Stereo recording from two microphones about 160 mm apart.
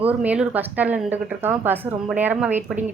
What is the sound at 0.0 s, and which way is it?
A woman's voice, 10° right (ahead or behind).